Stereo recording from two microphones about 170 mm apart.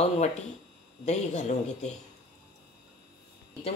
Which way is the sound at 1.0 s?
40° left (ahead or behind).